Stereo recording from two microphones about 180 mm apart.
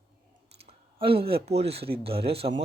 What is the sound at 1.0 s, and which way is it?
Speech, 30° right (ahead or behind).